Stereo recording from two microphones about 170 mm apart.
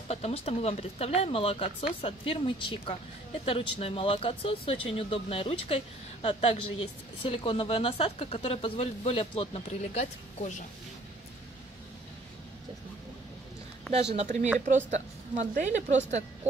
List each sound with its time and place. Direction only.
0.1 s speech: 40° left (ahead or behind)
14.1 s a woman's voice: 45° right (ahead or behind)